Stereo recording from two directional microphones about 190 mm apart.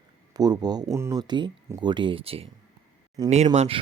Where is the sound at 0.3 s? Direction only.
20° right (ahead or behind).